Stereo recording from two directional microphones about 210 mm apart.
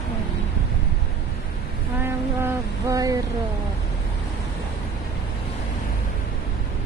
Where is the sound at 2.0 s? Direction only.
15° right (ahead or behind).